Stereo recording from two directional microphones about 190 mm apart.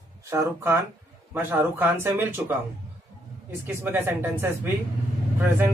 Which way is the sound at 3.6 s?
10° right (ahead or behind).